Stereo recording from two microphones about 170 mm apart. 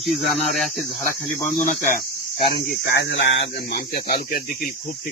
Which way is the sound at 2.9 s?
90° left.